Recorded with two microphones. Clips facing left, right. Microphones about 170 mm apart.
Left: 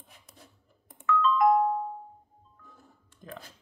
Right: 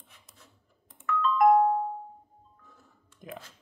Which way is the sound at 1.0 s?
55° right (ahead or behind).